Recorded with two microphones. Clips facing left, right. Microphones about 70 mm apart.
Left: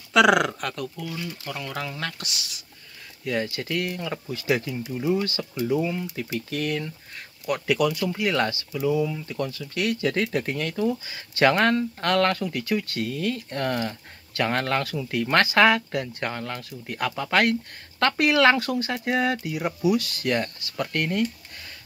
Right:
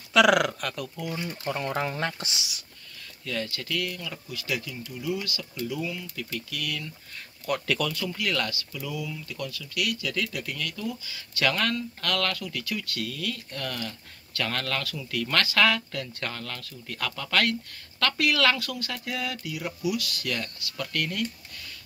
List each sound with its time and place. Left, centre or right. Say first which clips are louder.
0.1 s speech: left 2 dB; centre
1.0 s speech: right 2 dB; centre
3.3 s speech: left 5 dB; left
7.6 s speech: left 6 dB; centre